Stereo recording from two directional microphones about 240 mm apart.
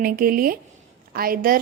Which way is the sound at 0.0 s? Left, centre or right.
Right.